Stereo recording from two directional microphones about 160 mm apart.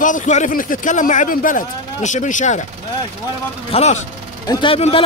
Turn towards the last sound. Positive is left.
turn(degrees=35)  # may be behind; listen again after turning